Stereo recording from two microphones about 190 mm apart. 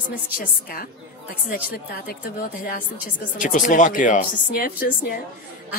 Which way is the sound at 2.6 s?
50° left (ahead or behind).